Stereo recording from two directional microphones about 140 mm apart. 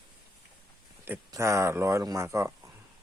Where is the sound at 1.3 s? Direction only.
20° right (ahead or behind).